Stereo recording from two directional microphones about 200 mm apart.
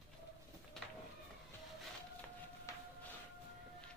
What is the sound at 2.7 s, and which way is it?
Music, 15° left (ahead or behind).